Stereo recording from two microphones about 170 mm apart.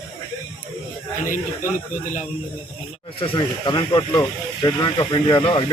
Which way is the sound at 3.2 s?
30° left (ahead or behind).